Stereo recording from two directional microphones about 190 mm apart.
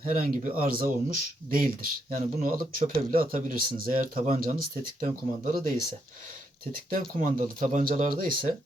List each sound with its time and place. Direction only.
0.0 s speech: 50° right (ahead or behind)
6.9 s speech: 45° right (ahead or behind)